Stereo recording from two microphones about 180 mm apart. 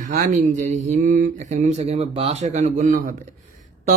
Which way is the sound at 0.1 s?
45° right (ahead or behind).